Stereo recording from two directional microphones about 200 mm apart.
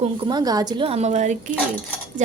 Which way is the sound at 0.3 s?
20° right (ahead or behind).